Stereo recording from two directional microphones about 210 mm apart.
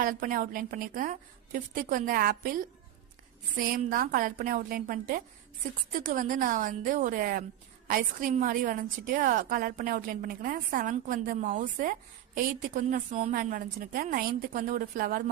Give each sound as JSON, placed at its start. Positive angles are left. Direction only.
{"t": 0.0, "sound": "a woman's voice", "side_deg": -40}
{"t": 3.5, "sound": "a woman's voice", "side_deg": -40}